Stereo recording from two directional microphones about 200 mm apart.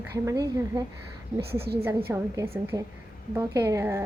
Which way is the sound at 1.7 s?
55° right (ahead or behind).